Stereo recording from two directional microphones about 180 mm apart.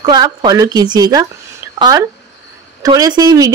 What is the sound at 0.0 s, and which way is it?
Speech, 25° right (ahead or behind).